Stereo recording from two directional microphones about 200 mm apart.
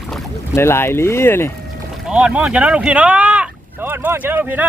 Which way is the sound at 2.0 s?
5° right (ahead or behind).